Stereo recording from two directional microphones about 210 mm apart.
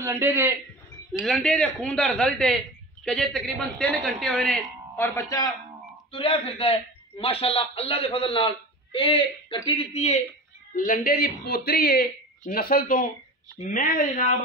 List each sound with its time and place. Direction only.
0.0 s a man's voice: 10° right (ahead or behind)
1.2 s a woman's voice: 5° left (ahead or behind)
6.1 s a man's voice: 25° left (ahead or behind)